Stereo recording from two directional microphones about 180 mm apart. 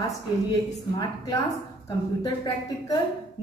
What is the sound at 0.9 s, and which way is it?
Speech, 20° left (ahead or behind).